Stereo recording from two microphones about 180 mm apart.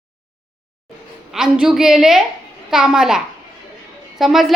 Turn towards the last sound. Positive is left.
turn(degrees=0)  # may be behind; listen again after turning